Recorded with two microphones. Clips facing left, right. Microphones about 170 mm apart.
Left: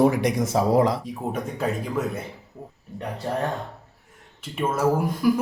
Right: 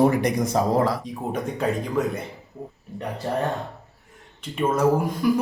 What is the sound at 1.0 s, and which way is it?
Speech, 5° left (ahead or behind).